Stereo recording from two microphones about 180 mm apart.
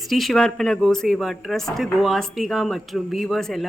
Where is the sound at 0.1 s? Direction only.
Centre (ahead or behind).